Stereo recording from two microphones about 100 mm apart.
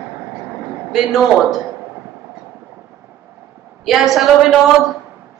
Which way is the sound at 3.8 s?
5° right (ahead or behind).